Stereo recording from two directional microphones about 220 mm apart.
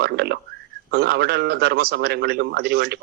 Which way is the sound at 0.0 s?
50° right (ahead or behind).